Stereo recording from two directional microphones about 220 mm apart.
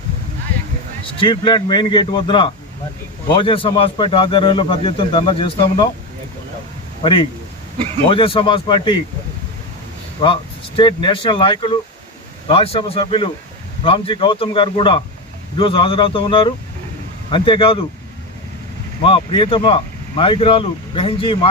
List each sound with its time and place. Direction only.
1.0 s a man's voice: 20° left (ahead or behind)
7.0 s a man's voice: 25° left (ahead or behind)
10.2 s a man's voice: 25° left (ahead or behind)
19.0 s a man's voice: 25° left (ahead or behind)